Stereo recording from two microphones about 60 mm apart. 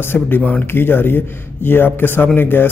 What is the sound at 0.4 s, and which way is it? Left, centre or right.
Speech, left.